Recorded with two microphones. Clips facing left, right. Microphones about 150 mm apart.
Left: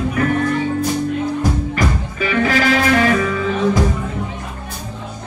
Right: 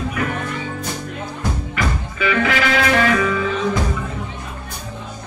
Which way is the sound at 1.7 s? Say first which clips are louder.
Left 4 dB; 35° left (ahead or behind).